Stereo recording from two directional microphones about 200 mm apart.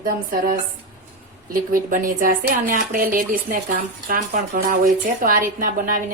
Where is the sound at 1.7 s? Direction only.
45° right (ahead or behind).